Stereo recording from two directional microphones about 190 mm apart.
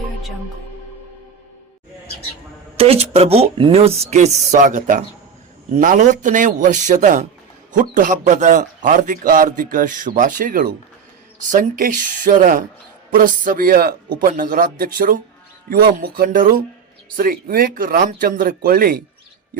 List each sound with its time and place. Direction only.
2.7 s a man's voice: 30° right (ahead or behind); by 19.0 s 55° right (ahead or behind)